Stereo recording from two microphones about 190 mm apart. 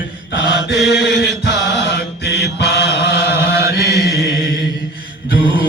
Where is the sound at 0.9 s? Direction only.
60° left (ahead or behind).